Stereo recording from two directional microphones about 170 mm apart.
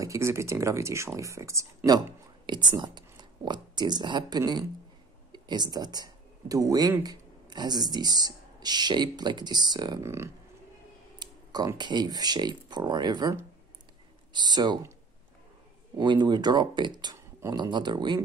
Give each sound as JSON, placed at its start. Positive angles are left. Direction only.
{"t": 0.0, "sound": "speech", "side_deg": -15}
{"t": 16.0, "sound": "speech", "side_deg": -25}